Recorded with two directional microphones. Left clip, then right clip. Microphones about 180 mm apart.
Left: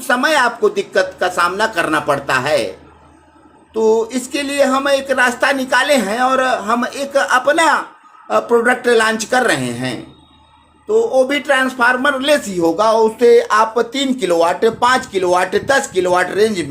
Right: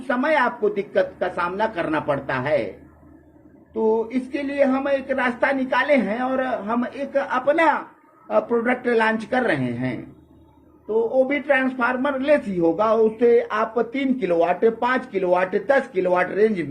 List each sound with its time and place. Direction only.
0.1 s speech: 30° left (ahead or behind)
3.8 s speech: 35° left (ahead or behind)